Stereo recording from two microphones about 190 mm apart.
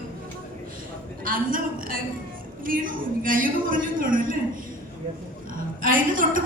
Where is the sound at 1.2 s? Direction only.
45° right (ahead or behind).